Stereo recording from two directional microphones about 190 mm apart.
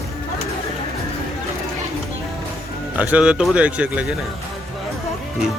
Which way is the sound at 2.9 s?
5° right (ahead or behind).